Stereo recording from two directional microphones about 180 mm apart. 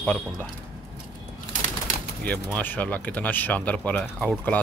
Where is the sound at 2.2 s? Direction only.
10° left (ahead or behind).